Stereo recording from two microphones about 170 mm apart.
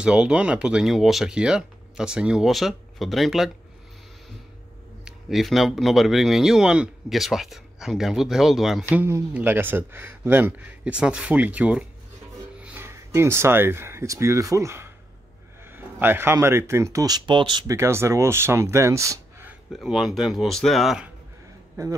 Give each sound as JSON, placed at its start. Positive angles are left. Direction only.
{"t": 0.0, "sound": "speech", "side_deg": -5}
{"t": 5.0, "sound": "speech", "side_deg": 0}
{"t": 8.8, "sound": "speech", "side_deg": -15}
{"t": 19.8, "sound": "speech", "side_deg": 0}
{"t": 21.8, "sound": "speech", "side_deg": -15}